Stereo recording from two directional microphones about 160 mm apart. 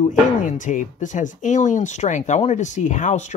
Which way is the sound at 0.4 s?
55° left (ahead or behind).